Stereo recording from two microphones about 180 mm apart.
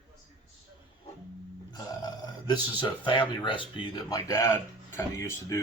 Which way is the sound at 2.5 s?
25° left (ahead or behind).